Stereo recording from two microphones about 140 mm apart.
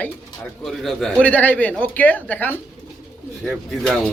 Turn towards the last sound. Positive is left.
turn(degrees=5)  # may be behind; listen again after turning